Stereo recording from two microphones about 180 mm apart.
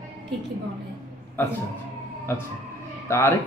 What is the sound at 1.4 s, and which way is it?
Speech, 10° left (ahead or behind).